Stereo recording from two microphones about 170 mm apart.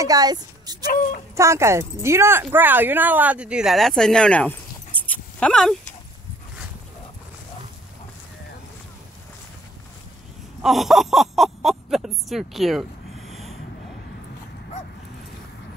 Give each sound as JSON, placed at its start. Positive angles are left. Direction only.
{"t": 0.0, "sound": "speech", "side_deg": -20}
{"t": 10.6, "sound": "speech", "side_deg": 0}
{"t": 13.3, "sound": "a sound", "side_deg": 0}